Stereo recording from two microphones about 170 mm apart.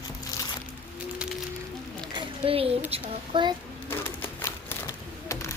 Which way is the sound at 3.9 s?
10° left (ahead or behind).